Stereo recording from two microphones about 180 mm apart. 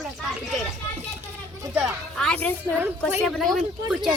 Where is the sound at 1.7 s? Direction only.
Centre (ahead or behind).